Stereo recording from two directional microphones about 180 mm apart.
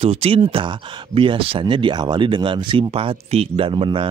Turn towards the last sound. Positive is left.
turn(degrees=-30)  # may be behind; listen again after turning